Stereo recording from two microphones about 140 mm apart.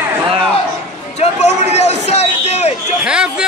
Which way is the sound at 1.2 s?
50° left (ahead or behind).